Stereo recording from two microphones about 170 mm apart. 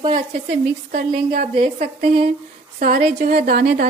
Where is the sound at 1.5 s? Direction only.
35° right (ahead or behind).